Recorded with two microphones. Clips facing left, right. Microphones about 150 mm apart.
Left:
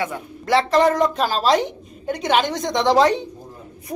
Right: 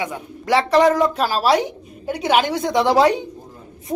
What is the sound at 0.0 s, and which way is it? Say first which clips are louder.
Speech: even; 15° right (ahead or behind).